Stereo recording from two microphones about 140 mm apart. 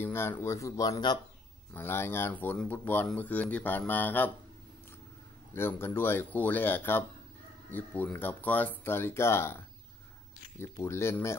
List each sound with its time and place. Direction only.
0.0 s speech: 15° left (ahead or behind)
1.7 s speech: 15° left (ahead or behind)
5.5 s speech: 15° left (ahead or behind)
10.6 s speech: 20° left (ahead or behind)